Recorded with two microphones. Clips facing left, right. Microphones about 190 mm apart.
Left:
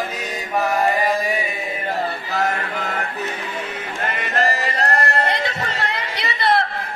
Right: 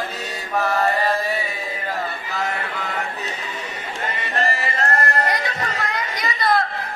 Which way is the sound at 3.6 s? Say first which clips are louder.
Left 2 dB; 60° left (ahead or behind).